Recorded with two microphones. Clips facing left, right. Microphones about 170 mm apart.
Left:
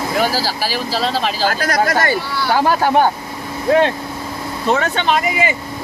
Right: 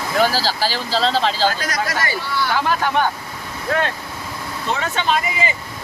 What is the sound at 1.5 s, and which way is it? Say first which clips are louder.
Speech: left 6 dB; 55° left (ahead or behind).